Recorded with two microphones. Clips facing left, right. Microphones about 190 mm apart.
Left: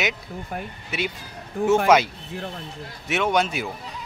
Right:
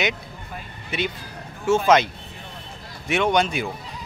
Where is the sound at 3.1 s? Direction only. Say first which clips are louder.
Right 2 dB; 5° left (ahead or behind).